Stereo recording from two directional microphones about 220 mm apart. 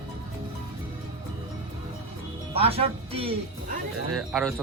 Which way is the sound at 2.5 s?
25° right (ahead or behind).